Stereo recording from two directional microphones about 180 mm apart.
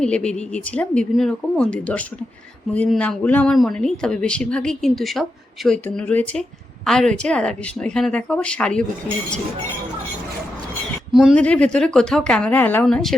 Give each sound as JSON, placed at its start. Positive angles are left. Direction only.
{"t": 0.0, "sound": "speech", "side_deg": 5}
{"t": 11.1, "sound": "speech", "side_deg": 0}